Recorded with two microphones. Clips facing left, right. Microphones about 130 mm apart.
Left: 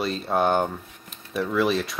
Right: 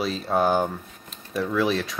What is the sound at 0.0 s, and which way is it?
Speech, centre (ahead or behind).